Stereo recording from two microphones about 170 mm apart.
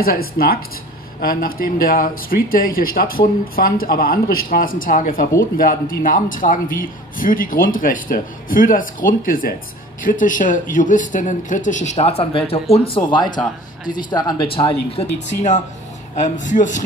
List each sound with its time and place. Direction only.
0.0 s a man's voice: 60° left (ahead or behind); by 15.0 s 35° left (ahead or behind)
16.2 s speech: 50° left (ahead or behind)